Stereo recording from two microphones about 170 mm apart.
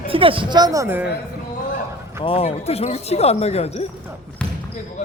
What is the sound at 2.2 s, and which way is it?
Speech, 35° left (ahead or behind).